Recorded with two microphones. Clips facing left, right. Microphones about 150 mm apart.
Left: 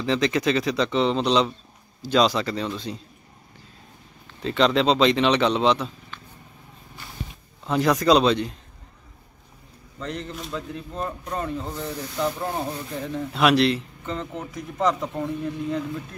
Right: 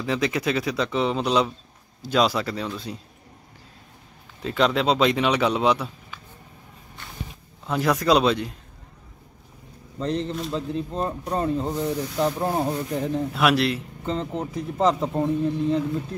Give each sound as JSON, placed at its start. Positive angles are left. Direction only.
{"t": 0.0, "sound": "speech", "side_deg": -5}
{"t": 4.4, "sound": "speech", "side_deg": -5}
{"t": 7.6, "sound": "speech", "side_deg": 0}
{"t": 9.9, "sound": "speech", "side_deg": -30}
{"t": 13.3, "sound": "speech", "side_deg": -5}
{"t": 14.0, "sound": "speech", "side_deg": -35}